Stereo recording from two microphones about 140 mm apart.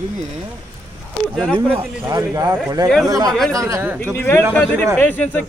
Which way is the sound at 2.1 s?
25° right (ahead or behind).